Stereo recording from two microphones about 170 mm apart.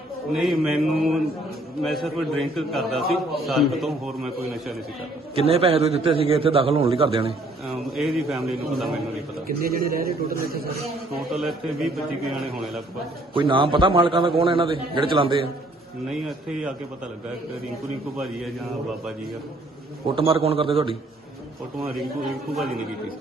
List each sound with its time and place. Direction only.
0.3 s a man's voice: centre (ahead or behind)
5.3 s a man's voice: 35° right (ahead or behind)
7.7 s a man's voice: centre (ahead or behind)
9.6 s a man's voice: 60° right (ahead or behind)
11.3 s a man's voice: centre (ahead or behind)
13.3 s a man's voice: 30° right (ahead or behind)
16.0 s a man's voice: 5° right (ahead or behind)
20.1 s a man's voice: 30° right (ahead or behind)
21.8 s a man's voice: centre (ahead or behind)